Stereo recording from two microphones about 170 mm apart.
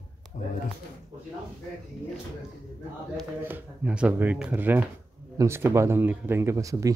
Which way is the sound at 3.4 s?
10° right (ahead or behind).